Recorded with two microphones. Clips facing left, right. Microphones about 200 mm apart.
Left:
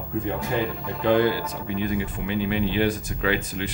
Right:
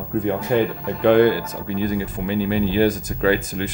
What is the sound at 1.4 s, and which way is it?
A man's voice, 40° right (ahead or behind).